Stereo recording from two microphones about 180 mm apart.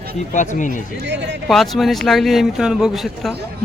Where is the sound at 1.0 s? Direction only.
75° right (ahead or behind).